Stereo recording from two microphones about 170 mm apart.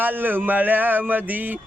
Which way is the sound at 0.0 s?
10° right (ahead or behind).